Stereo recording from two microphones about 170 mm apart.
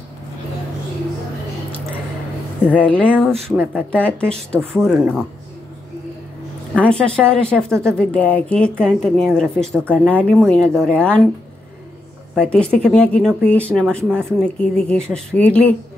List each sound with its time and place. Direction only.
2.7 s speech: 10° left (ahead or behind)
4.8 s speech: 10° right (ahead or behind)
6.7 s a woman's voice: 5° left (ahead or behind)
12.4 s a woman's voice: 5° left (ahead or behind)